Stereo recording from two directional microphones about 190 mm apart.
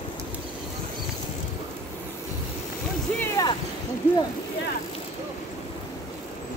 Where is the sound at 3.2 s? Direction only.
20° left (ahead or behind).